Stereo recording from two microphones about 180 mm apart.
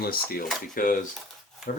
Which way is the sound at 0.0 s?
55° left (ahead or behind).